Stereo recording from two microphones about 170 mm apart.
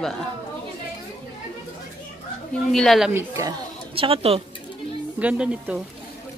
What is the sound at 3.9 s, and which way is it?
Speech, 35° right (ahead or behind).